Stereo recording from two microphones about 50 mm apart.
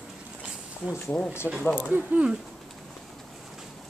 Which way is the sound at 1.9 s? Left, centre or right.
Right.